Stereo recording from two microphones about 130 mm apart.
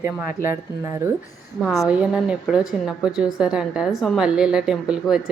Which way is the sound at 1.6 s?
Centre (ahead or behind).